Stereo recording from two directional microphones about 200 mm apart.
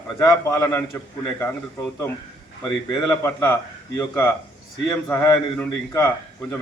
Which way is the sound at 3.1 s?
15° left (ahead or behind).